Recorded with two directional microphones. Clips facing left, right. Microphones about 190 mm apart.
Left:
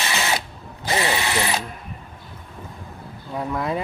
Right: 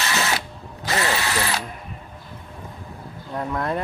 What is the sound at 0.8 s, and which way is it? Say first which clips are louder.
Drill: left 1 dB; 20° left (ahead or behind).